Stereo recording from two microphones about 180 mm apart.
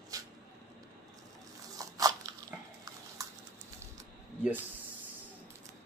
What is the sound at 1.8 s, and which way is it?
Crunch, 20° right (ahead or behind).